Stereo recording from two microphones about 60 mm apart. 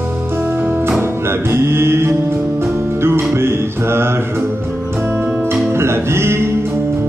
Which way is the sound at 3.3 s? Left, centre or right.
Right.